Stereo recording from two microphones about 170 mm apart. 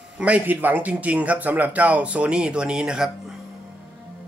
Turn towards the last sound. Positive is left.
turn(degrees=-5)  # may be behind; listen again after turning